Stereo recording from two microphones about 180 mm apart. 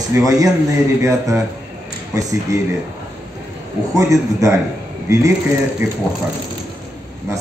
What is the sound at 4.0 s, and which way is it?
Speech, 15° right (ahead or behind).